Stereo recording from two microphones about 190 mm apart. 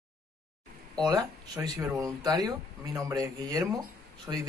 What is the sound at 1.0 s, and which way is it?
Speech, 20° right (ahead or behind).